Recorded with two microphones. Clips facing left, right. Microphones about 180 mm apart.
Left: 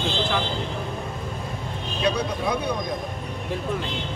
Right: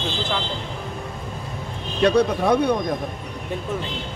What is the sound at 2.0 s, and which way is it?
Speech, 60° right (ahead or behind).